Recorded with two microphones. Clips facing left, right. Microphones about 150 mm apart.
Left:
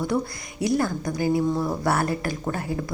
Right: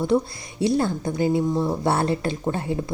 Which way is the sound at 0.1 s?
25° right (ahead or behind).